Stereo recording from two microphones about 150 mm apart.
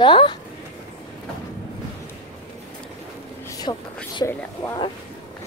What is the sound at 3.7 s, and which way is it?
Speech, 30° left (ahead or behind).